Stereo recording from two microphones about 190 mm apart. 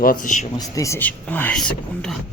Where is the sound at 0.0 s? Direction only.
45° left (ahead or behind).